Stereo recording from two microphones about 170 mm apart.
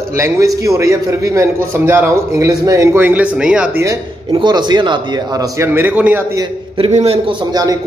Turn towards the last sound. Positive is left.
turn(degrees=-35)  # may be behind; listen again after turning